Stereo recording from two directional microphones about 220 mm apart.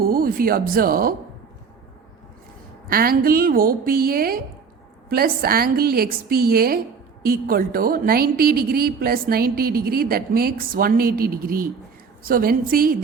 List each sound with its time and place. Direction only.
0.0 s speech: 40° right (ahead or behind)
2.9 s a woman's voice: 40° right (ahead or behind)